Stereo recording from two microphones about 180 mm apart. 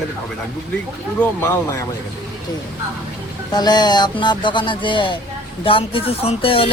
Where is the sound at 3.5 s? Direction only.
25° left (ahead or behind).